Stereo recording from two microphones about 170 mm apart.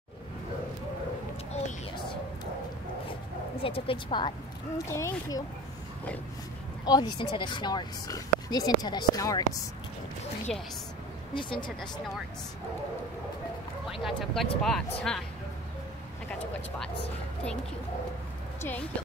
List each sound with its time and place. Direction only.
1.5 s a sound: 30° left (ahead or behind)
3.6 s speech: 30° left (ahead or behind)
4.7 s speech: 15° left (ahead or behind)
6.8 s speech: 25° left (ahead or behind)
11.3 s speech: 30° left (ahead or behind)
14.0 s speech: centre (ahead or behind)
18.6 s speech: 10° left (ahead or behind)